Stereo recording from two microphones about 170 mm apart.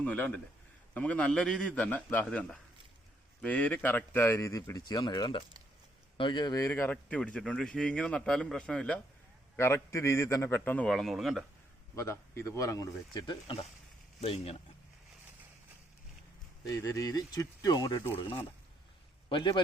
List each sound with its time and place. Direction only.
0.0 s a man's voice: 10° left (ahead or behind)
11.9 s speech: 15° left (ahead or behind)
14.2 s speech: 35° left (ahead or behind)
16.6 s speech: 20° left (ahead or behind)
19.3 s speech: 30° left (ahead or behind)